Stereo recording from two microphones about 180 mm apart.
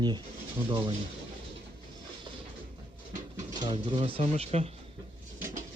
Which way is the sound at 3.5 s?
25° right (ahead or behind).